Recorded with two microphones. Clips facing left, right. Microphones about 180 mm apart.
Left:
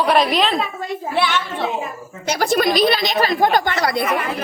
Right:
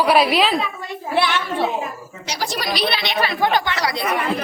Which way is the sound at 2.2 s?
50° left (ahead or behind).